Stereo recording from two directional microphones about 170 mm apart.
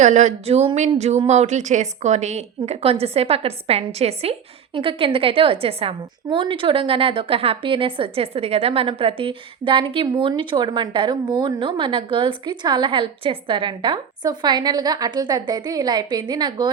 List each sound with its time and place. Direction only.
0.0 s a woman's voice: 45° right (ahead or behind); by 16.6 s 25° right (ahead or behind)